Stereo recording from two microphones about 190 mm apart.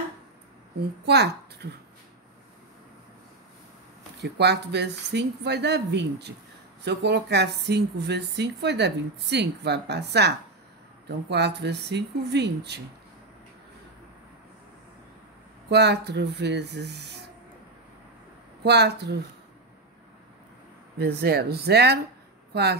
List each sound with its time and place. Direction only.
1.0 s speech: 60° right (ahead or behind)
4.2 s speech: 60° right (ahead or behind)
15.7 s speech: 60° right (ahead or behind)
18.6 s speech: 60° right (ahead or behind)
21.0 s speech: 55° right (ahead or behind)